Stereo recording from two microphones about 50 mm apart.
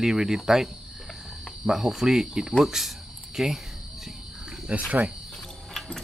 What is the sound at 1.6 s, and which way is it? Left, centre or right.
Speech, centre.